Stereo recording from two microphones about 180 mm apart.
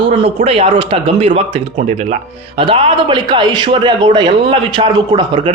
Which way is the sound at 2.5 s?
30° right (ahead or behind).